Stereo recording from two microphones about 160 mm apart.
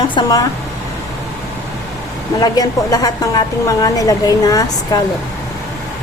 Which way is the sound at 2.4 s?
25° left (ahead or behind).